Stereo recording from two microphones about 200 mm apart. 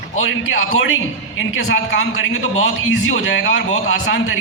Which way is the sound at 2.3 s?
75° left (ahead or behind).